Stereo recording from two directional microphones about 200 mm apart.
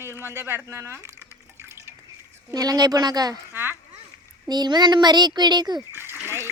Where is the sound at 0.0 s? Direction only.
10° right (ahead or behind).